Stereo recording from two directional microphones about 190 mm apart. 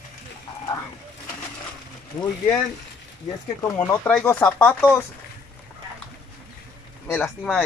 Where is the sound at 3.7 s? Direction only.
10° left (ahead or behind).